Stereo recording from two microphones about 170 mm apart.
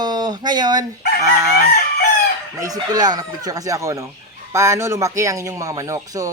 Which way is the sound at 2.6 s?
20° right (ahead or behind).